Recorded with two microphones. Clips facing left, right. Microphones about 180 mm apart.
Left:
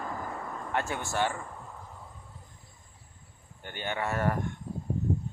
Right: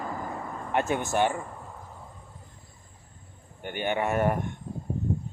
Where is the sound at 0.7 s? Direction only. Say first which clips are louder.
Right 6 dB; 20° right (ahead or behind).